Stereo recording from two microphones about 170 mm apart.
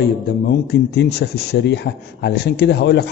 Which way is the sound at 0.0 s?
75° left (ahead or behind).